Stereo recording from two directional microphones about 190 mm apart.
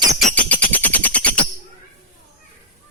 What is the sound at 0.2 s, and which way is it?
Bird, 5° left (ahead or behind).